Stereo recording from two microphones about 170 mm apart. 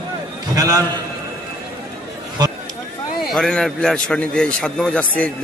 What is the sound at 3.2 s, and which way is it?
A man's voice, centre (ahead or behind).